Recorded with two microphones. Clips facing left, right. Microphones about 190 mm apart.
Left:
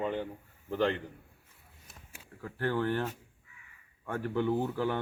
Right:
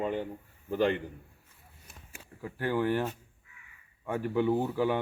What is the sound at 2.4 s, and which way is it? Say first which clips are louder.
A man's voice: right 2 dB; 10° right (ahead or behind).